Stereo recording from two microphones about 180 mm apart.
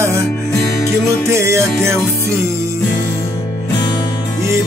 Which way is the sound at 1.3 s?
15° right (ahead or behind).